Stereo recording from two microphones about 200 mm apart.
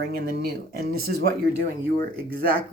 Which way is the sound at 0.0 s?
50° right (ahead or behind).